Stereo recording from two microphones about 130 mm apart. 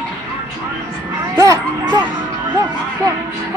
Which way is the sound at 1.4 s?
25° right (ahead or behind).